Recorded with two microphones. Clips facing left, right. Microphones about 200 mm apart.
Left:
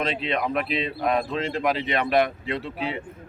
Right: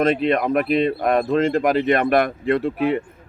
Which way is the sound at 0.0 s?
50° right (ahead or behind).